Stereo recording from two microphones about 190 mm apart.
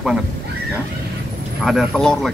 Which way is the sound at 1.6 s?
Centre (ahead or behind).